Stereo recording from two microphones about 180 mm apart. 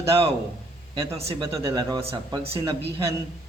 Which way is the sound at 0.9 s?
30° right (ahead or behind).